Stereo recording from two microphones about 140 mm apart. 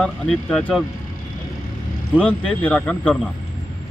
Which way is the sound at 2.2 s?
10° left (ahead or behind).